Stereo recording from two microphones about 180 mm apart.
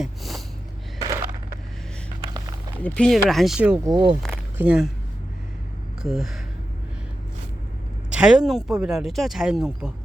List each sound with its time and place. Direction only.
0.0 s snort: centre (ahead or behind)
2.8 s speech: 5° left (ahead or behind)
3.8 s speech: 20° right (ahead or behind)
4.5 s speech: 5° right (ahead or behind)
6.0 s speech: centre (ahead or behind)
8.1 s speech: 5° right (ahead or behind)